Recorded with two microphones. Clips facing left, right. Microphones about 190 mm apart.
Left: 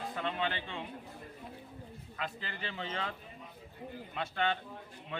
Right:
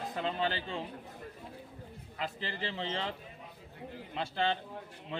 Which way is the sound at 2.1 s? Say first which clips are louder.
Right 3 dB; 30° right (ahead or behind).